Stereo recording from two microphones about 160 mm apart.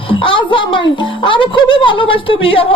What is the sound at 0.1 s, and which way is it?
A child's voice, 35° left (ahead or behind).